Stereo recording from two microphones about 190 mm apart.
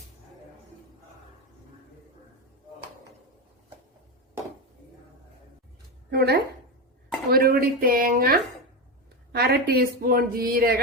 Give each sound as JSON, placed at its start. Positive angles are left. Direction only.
{"t": 6.1, "sound": "a woman's voice", "side_deg": -55}